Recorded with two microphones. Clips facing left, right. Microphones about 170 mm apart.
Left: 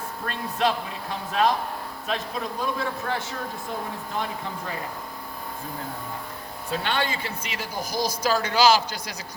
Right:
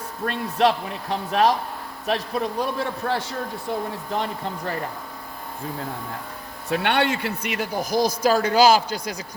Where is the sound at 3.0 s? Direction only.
40° right (ahead or behind).